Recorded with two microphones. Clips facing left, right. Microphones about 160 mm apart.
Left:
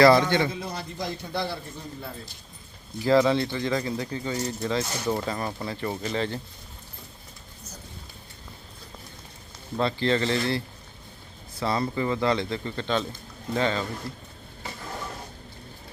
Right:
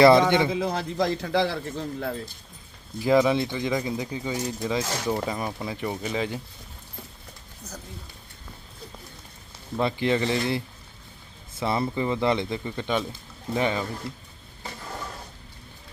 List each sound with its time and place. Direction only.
0.0 s speech: 20° right (ahead or behind)
0.5 s a man's voice: 90° right
3.1 s speech: 15° right (ahead or behind)
9.7 s speech: 15° right (ahead or behind)
11.6 s speech: 20° right (ahead or behind)